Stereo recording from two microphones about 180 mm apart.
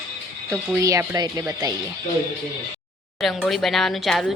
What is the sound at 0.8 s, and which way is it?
Speech, 20° right (ahead or behind).